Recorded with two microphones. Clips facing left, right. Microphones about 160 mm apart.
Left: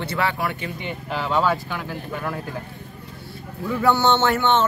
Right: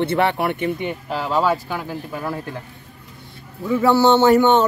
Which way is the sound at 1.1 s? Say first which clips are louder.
Right 1 dB; 5° right (ahead or behind).